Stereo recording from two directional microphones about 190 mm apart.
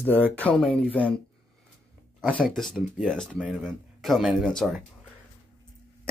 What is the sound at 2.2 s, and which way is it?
Speech, centre (ahead or behind).